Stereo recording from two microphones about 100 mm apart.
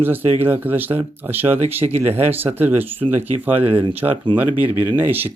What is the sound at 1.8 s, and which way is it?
Speech, 90° right.